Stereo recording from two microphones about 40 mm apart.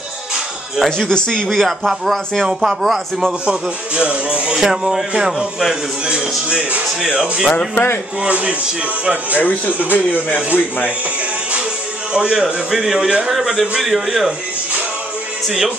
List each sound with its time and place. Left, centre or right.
0.8 s speech: centre
2.6 s a man's voice: centre
3.4 s speech: right
4.6 s a man's voice: centre
7.7 s speech: left
8.2 s speech: right
9.3 s speech: left
12.1 s speech: right
12.8 s a man's voice: centre
15.4 s a man's voice: centre